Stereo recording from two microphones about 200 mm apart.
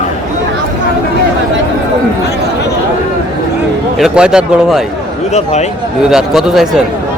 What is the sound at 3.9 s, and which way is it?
Speech, 5° right (ahead or behind).